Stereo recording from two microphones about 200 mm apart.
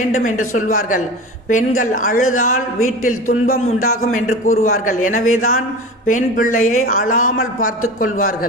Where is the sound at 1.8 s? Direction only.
40° left (ahead or behind).